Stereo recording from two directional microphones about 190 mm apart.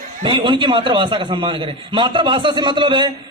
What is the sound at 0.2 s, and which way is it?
A man's voice, 25° right (ahead or behind).